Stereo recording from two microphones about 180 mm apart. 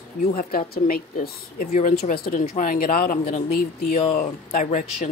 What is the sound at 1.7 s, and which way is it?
Speech, 45° left (ahead or behind).